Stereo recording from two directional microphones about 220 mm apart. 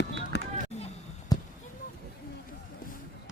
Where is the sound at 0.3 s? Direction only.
50° left (ahead or behind).